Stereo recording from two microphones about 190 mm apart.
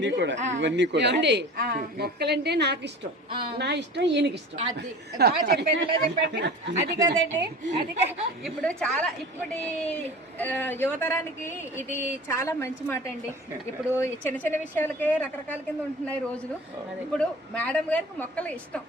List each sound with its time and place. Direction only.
0.0 s a man's voice: 70° right (ahead or behind)
3.2 s a woman's voice: 25° right (ahead or behind)
3.6 s a woman's voice: 65° right (ahead or behind)
7.0 s a woman's voice: 15° right (ahead or behind)
8.4 s a woman's voice: 5° left (ahead or behind)
17.1 s a woman's voice: 5° left (ahead or behind)